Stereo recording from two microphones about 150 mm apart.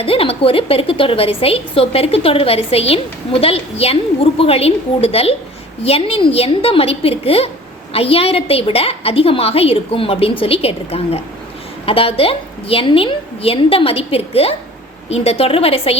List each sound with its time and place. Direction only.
0.0 s a woman's voice: 40° left (ahead or behind)